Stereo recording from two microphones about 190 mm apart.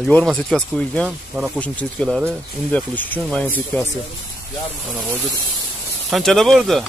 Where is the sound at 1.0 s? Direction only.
5° right (ahead or behind).